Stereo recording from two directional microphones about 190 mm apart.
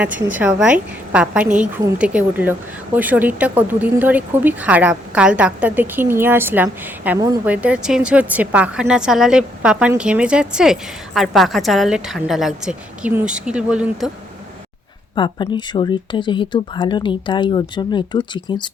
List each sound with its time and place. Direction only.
0.0 s a woman's voice: 10° right (ahead or behind)
15.1 s speech: 25° left (ahead or behind)